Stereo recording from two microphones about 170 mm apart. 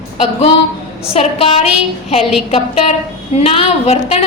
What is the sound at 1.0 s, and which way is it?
A woman's voice, 35° left (ahead or behind).